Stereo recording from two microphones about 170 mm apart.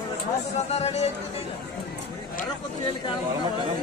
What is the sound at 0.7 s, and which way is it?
Speech, 40° left (ahead or behind).